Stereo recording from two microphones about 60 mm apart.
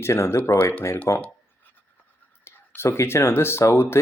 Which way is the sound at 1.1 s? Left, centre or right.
Left.